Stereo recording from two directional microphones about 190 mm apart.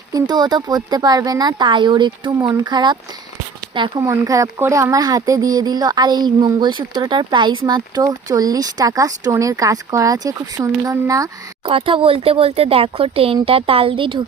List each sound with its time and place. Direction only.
0.1 s speech: 20° right (ahead or behind)
11.7 s speech: 30° right (ahead or behind)